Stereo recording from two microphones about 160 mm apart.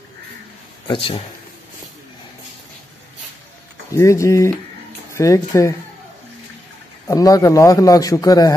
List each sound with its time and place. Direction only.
0.8 s a man's voice: 30° left (ahead or behind)
3.9 s a man's voice: 20° left (ahead or behind)
7.1 s a man's voice: 20° left (ahead or behind)